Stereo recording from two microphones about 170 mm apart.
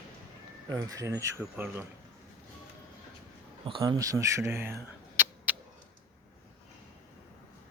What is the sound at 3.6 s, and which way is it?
Speech, 25° right (ahead or behind).